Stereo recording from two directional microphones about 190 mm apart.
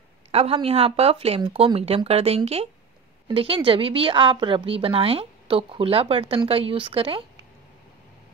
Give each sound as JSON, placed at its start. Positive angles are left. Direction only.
{"t": 0.3, "sound": "a woman's voice", "side_deg": -30}